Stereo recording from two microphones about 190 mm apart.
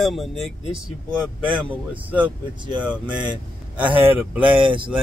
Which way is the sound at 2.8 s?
5° right (ahead or behind).